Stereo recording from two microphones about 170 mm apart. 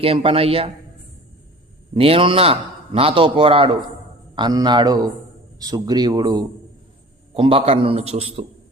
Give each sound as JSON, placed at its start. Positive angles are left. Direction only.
{"t": 0.0, "sound": "a man's voice", "side_deg": -35}
{"t": 1.9, "sound": "a man's voice", "side_deg": -35}